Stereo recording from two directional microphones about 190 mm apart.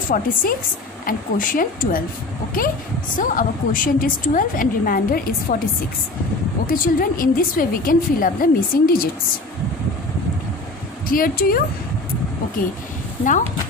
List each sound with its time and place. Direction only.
0.1 s a woman's voice: 45° left (ahead or behind)
3.2 s a woman's voice: 45° left (ahead or behind)
6.7 s a woman's voice: 50° left (ahead or behind)
11.1 s a woman's voice: 50° left (ahead or behind)